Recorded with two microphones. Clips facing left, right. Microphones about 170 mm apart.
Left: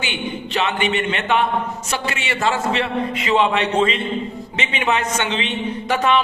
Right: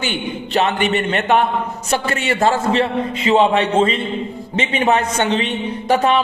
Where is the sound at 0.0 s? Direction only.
40° right (ahead or behind).